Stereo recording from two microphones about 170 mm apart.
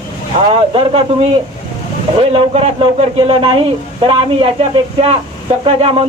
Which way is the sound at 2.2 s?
35° right (ahead or behind).